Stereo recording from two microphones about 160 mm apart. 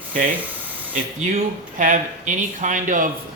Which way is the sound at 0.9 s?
55° right (ahead or behind).